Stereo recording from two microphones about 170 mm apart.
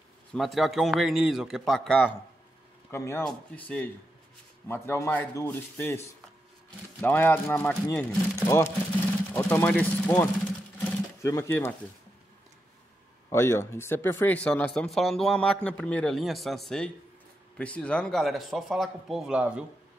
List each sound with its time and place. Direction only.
0.3 s a man's voice: centre (ahead or behind)
2.9 s speech: 15° left (ahead or behind)
13.3 s a man's voice: 15° left (ahead or behind); by 19.6 s 5° right (ahead or behind)